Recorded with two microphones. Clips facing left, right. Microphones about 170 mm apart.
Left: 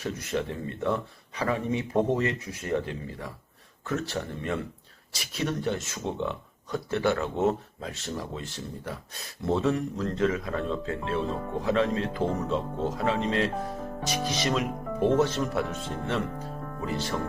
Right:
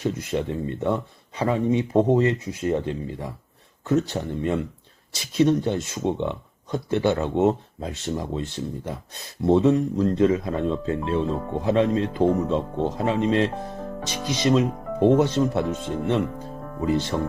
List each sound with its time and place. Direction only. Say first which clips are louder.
0.0 s speech: right 5 dB; 20° right (ahead or behind)